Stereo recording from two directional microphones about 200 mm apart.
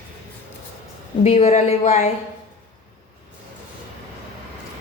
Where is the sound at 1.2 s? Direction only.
30° left (ahead or behind).